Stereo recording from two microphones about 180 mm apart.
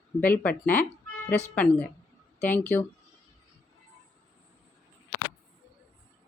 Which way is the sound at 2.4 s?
10° left (ahead or behind).